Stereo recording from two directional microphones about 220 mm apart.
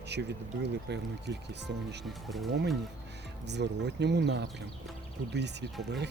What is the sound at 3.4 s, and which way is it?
Speech, 50° right (ahead or behind).